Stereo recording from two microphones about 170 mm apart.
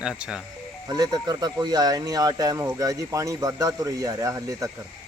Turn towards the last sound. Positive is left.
turn(degrees=-20)  # may be behind; listen again after turning